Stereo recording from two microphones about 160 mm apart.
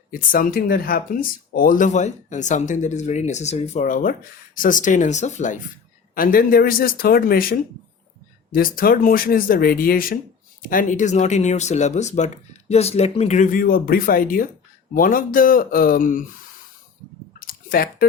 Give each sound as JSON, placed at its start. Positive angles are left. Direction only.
{"t": 0.1, "sound": "speech", "side_deg": 60}
{"t": 6.1, "sound": "speech", "side_deg": 60}
{"t": 17.4, "sound": "chewing", "side_deg": 65}